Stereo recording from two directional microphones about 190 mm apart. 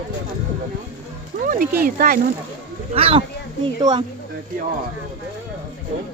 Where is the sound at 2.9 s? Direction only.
30° right (ahead or behind).